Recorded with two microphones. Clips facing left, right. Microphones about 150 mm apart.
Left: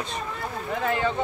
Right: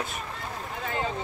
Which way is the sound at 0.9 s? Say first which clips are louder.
Left 5 dB; 75° left (ahead or behind).